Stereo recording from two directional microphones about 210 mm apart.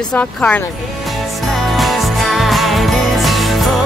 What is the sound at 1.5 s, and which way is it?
Jingle bell, centre (ahead or behind).